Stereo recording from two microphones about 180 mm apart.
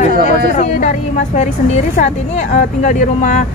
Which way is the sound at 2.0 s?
40° left (ahead or behind).